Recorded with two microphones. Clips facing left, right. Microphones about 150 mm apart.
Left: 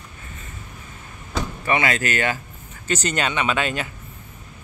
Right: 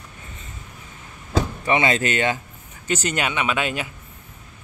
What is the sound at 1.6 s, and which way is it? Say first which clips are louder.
Speech: even; 25° right (ahead or behind).